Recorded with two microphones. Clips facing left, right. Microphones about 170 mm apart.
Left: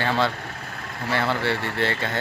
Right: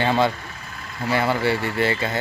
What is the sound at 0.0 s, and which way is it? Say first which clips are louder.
A man's voice: right 3 dB; 15° right (ahead or behind).